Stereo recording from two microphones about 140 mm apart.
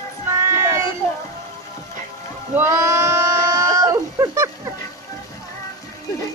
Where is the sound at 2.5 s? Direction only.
20° right (ahead or behind).